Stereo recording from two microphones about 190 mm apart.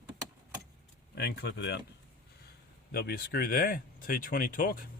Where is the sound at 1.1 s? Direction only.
60° left (ahead or behind).